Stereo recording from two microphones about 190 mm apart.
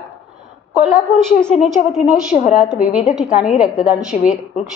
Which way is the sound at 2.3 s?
40° left (ahead or behind).